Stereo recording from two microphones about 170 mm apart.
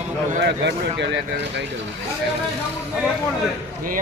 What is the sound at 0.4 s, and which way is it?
Speech, 85° right.